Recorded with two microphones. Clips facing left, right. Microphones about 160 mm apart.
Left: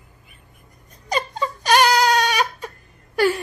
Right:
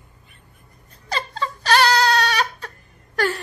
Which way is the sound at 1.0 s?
15° left (ahead or behind).